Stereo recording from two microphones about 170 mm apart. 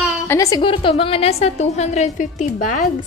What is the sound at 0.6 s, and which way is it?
A woman's voice, 30° left (ahead or behind).